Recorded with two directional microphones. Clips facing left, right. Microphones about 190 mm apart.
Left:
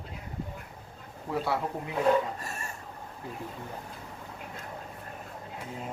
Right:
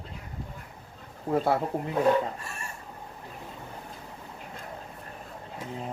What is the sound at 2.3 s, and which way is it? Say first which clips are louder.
Chicken: left 1 dB; 40° left (ahead or behind).